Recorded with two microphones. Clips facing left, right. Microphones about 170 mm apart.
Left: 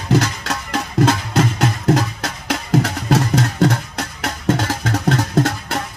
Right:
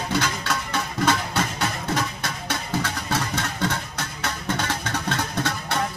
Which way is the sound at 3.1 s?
40° left (ahead or behind).